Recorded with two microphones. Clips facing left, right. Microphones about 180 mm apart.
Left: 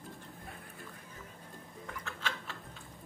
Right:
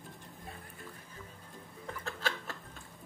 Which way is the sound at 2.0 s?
40° right (ahead or behind).